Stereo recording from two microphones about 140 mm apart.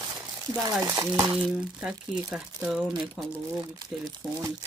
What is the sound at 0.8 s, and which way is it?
Speech, 25° right (ahead or behind).